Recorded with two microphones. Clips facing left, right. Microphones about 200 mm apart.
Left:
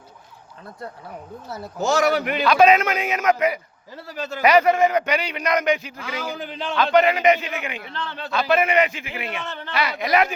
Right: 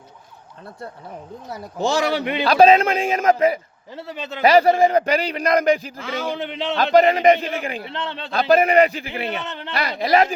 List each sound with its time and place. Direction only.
1.5 s speech: 15° right (ahead or behind)
1.8 s a man's voice: 30° right (ahead or behind)
9.4 s a man's voice: 20° right (ahead or behind)
9.7 s a man's voice: 35° right (ahead or behind)